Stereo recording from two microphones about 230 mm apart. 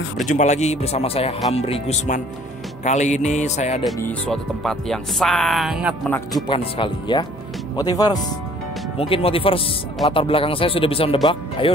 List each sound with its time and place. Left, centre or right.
0.2 s speech: left
2.8 s music: left
3.8 s speech: centre
6.0 s speech: centre
6.4 s speech: left